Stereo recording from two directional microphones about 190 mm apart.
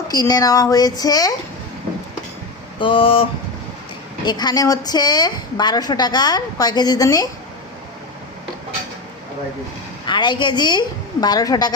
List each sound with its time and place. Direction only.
0.1 s a woman's voice: 20° left (ahead or behind)
2.7 s a woman's voice: 25° left (ahead or behind)
4.3 s a woman's voice: 20° left (ahead or behind)
10.1 s a woman's voice: 25° left (ahead or behind)